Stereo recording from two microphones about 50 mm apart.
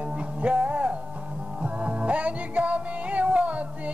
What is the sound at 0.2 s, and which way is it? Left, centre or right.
Music, right.